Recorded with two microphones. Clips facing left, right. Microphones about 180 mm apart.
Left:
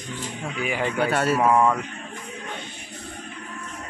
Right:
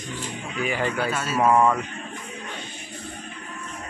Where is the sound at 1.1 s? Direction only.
65° left (ahead or behind).